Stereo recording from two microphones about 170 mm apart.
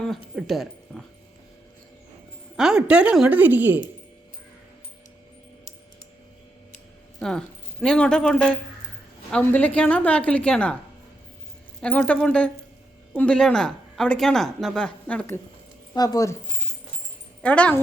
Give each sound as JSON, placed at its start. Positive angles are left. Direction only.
{"t": 0.3, "sound": "speech", "side_deg": 0}
{"t": 2.6, "sound": "a woman's voice", "side_deg": -5}
{"t": 7.2, "sound": "a woman's voice", "side_deg": 5}
{"t": 11.8, "sound": "speech", "side_deg": 5}
{"t": 16.0, "sound": "speech", "side_deg": 20}
{"t": 17.4, "sound": "a woman's voice", "side_deg": 5}